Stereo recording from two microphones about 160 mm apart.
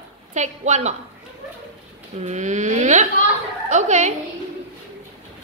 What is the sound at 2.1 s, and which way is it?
A woman's voice, 45° right (ahead or behind).